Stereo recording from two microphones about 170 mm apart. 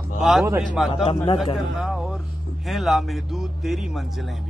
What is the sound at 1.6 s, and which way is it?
Speech, 5° right (ahead or behind).